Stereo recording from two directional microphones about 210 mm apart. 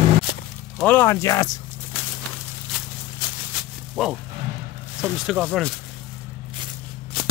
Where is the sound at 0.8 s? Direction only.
10° left (ahead or behind).